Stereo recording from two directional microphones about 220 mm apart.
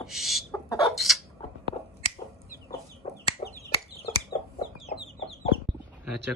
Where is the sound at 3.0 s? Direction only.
30° left (ahead or behind).